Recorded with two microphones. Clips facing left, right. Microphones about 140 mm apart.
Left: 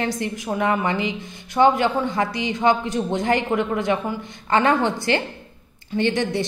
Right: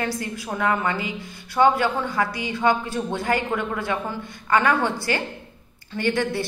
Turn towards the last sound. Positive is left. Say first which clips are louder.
# left 2 dB
turn(degrees=20)  # may be behind; listen again after turning